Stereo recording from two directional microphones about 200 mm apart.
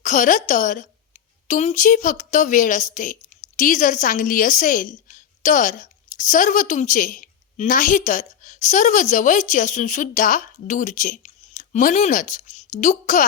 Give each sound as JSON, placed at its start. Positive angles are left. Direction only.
{"t": 0.0, "sound": "a woman's voice", "side_deg": 40}